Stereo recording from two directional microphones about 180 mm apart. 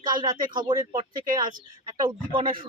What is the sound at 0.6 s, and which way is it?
Speech, 25° right (ahead or behind).